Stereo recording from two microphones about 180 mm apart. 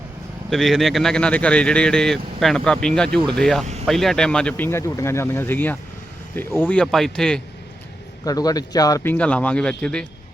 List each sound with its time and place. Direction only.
0.5 s speech: centre (ahead or behind)
8.2 s speech: 20° left (ahead or behind)
9.1 s speech: 5° left (ahead or behind)